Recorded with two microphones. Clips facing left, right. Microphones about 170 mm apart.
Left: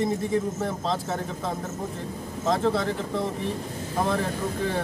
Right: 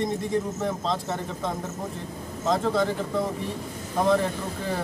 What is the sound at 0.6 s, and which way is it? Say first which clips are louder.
Speech: even; centre (ahead or behind).